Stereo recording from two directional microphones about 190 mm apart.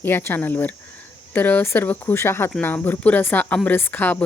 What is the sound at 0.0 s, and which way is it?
Speech, 10° left (ahead or behind).